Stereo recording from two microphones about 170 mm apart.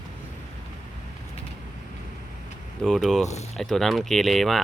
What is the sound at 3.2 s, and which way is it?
Speech, 40° left (ahead or behind).